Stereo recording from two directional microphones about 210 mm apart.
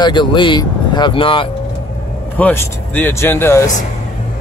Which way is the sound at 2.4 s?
10° left (ahead or behind).